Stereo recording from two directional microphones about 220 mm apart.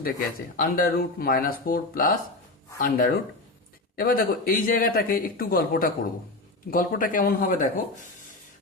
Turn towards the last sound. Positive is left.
turn(degrees=40)  # may be behind; listen again after turning